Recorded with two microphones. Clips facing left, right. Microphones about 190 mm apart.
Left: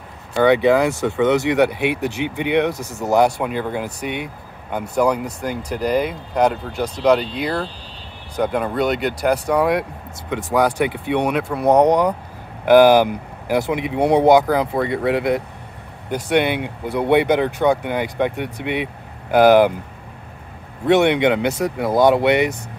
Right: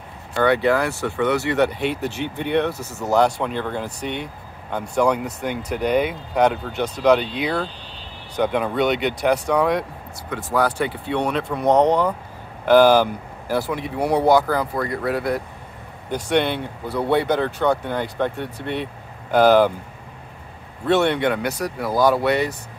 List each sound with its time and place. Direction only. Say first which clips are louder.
0.3 s speech: left 4 dB; 15° left (ahead or behind)
16.1 s speech: left 2 dB; 10° left (ahead or behind)
20.8 s speech: left 4 dB; 15° left (ahead or behind)